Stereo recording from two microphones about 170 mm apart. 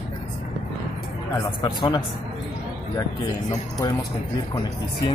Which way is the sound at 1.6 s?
25° left (ahead or behind).